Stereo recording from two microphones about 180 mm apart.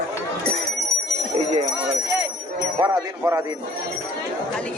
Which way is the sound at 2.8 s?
20° right (ahead or behind).